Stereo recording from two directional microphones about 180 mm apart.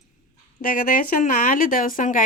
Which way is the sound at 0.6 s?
50° left (ahead or behind).